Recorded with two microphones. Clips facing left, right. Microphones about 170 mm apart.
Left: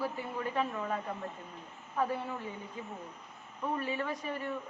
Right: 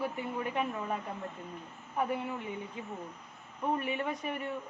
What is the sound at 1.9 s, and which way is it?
Speech, 20° right (ahead or behind).